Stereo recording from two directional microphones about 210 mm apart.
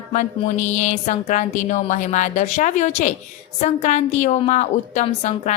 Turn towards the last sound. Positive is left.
turn(degrees=30)  # may be behind; listen again after turning